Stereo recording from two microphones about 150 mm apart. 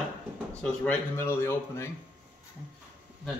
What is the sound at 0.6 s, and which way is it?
Speech, 5° left (ahead or behind).